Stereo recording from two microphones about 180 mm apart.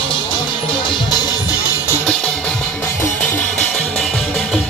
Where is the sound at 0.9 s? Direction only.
20° left (ahead or behind).